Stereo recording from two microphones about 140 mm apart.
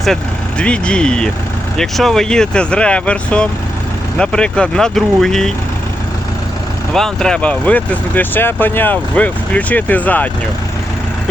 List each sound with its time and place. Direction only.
0.6 s speech: 10° left (ahead or behind)
6.9 s speech: 5° left (ahead or behind)